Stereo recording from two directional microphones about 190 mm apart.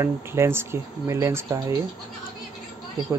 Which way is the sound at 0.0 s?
15° right (ahead or behind).